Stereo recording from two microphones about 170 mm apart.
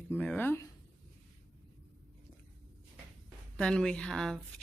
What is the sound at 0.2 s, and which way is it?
Speech, 10° left (ahead or behind).